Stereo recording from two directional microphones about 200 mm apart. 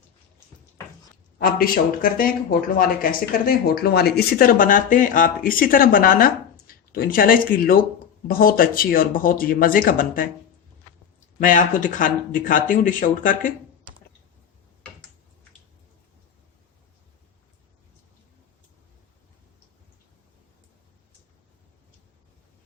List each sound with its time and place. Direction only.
1.4 s speech: 45° left (ahead or behind)
11.3 s speech: 40° left (ahead or behind)